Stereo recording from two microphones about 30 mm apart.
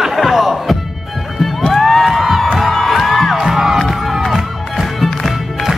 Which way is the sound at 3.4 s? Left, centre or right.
Centre.